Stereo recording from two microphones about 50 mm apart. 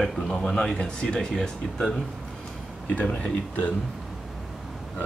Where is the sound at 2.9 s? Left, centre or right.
Left.